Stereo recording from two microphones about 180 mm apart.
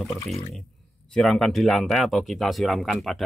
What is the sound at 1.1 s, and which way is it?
Speech, 5° left (ahead or behind).